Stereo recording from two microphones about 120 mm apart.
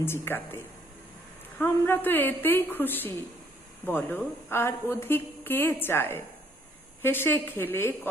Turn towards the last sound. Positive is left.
turn(degrees=20)  # may be behind; listen again after turning